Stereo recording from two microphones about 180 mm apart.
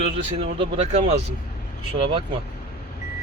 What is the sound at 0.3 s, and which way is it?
Speech, 30° right (ahead or behind).